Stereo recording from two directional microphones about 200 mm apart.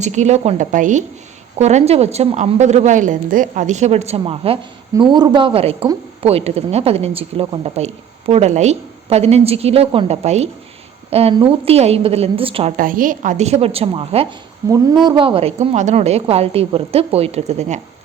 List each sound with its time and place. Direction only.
0.0 s a woman's voice: 35° right (ahead or behind)
12.7 s a woman's voice: 45° right (ahead or behind); by 14.3 s 25° right (ahead or behind)
14.6 s a woman's voice: 15° right (ahead or behind); by 17.7 s 35° right (ahead or behind)